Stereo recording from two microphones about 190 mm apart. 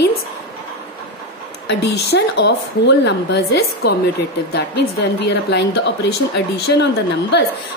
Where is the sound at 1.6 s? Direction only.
65° left (ahead or behind).